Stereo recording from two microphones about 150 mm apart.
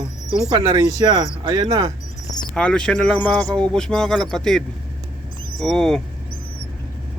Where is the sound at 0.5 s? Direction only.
25° right (ahead or behind).